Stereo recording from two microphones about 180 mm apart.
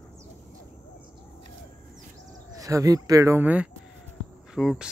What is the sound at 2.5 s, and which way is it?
Speech, 20° right (ahead or behind).